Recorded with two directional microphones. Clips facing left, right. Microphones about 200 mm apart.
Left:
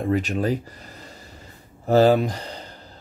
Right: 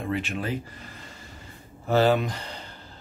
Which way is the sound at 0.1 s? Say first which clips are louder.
Left 7 dB; 40° left (ahead or behind).